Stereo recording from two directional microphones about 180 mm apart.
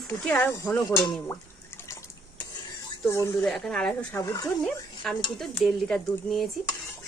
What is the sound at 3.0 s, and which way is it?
Speech, 15° left (ahead or behind).